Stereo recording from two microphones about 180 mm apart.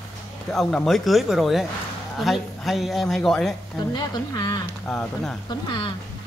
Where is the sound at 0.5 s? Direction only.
Centre (ahead or behind).